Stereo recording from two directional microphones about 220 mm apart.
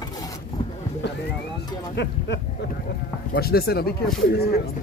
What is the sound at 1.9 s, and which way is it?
Speech, 50° left (ahead or behind).